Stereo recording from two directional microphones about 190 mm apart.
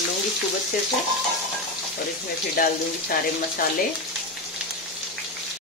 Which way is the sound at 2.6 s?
50° left (ahead or behind).